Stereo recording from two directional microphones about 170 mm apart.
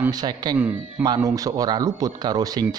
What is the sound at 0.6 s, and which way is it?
Speech, 10° right (ahead or behind).